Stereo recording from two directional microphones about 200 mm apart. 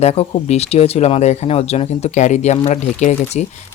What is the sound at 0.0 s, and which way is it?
Speech, 30° left (ahead or behind).